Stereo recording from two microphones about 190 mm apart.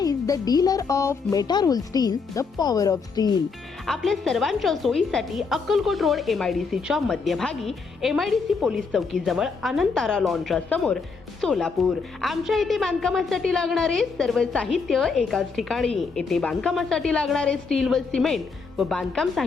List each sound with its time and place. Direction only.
0.0 s speech: 20° left (ahead or behind)
3.8 s a woman's voice: centre (ahead or behind)